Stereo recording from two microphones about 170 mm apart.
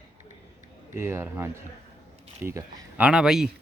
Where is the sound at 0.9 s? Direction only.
15° right (ahead or behind).